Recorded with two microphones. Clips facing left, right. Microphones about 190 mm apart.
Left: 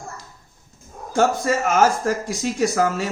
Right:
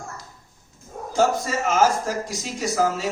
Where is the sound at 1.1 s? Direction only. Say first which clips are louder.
Left 2 dB; 55° left (ahead or behind).